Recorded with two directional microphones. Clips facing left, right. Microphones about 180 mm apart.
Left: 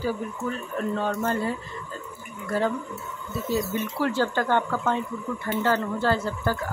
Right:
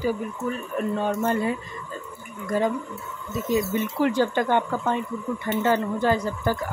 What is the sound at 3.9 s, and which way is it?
Speech, 15° right (ahead or behind).